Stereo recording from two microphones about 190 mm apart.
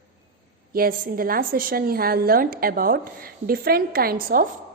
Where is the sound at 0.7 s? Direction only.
50° right (ahead or behind).